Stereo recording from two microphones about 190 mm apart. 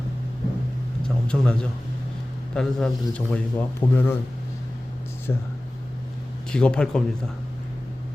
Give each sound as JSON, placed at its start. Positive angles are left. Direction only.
{"t": 1.0, "sound": "speech", "side_deg": 5}
{"t": 5.3, "sound": "speech", "side_deg": 15}
{"t": 6.5, "sound": "speech", "side_deg": 5}